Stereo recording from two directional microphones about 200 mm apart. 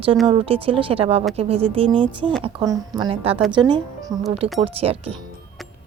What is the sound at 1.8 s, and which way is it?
Speech, 5° left (ahead or behind).